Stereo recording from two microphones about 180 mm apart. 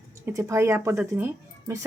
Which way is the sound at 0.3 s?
15° right (ahead or behind).